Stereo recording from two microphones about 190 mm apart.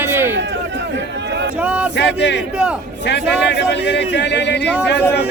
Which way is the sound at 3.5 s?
60° left (ahead or behind).